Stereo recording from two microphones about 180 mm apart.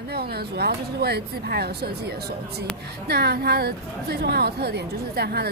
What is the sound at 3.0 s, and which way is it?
A woman's voice, 65° right (ahead or behind).